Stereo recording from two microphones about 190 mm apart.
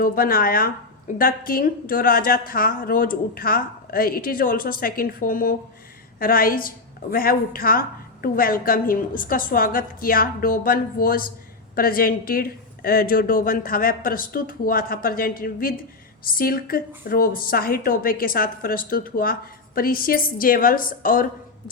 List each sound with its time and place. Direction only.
0.0 s a woman's voice: 50° left (ahead or behind)